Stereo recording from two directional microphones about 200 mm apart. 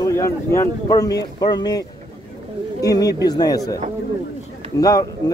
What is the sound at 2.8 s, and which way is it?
Speech, 20° left (ahead or behind).